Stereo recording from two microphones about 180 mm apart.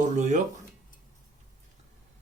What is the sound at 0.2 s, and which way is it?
Speech, 45° right (ahead or behind).